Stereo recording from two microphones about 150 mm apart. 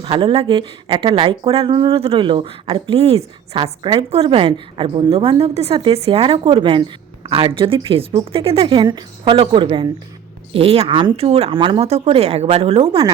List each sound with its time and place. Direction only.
0.0 s speech: 35° right (ahead or behind)